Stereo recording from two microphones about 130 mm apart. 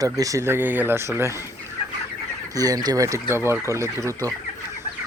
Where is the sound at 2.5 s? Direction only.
30° right (ahead or behind).